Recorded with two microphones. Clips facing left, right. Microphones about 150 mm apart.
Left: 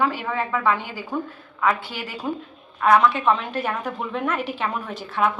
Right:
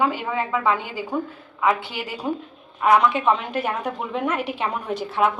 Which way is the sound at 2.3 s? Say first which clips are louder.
Right 1 dB; 20° right (ahead or behind).